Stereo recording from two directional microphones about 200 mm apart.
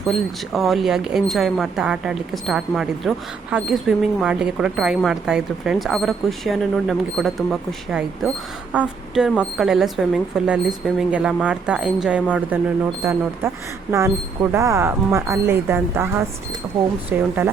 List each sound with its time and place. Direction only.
0.0 s speech: centre (ahead or behind)
14.5 s speech: 15° right (ahead or behind)